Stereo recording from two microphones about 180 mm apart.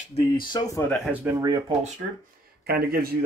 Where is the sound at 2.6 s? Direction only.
60° right (ahead or behind).